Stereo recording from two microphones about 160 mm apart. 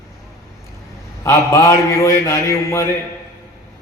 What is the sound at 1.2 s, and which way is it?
A man's voice, 20° left (ahead or behind).